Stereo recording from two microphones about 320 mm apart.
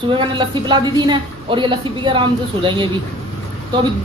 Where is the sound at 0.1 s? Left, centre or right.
Centre.